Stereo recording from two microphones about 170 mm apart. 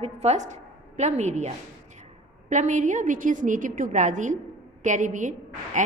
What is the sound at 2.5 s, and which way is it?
A woman's voice, 45° right (ahead or behind).